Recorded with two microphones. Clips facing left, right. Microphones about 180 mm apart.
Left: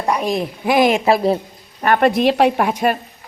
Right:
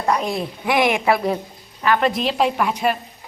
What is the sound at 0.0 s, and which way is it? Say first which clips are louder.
Speech: left 2 dB; 15° left (ahead or behind).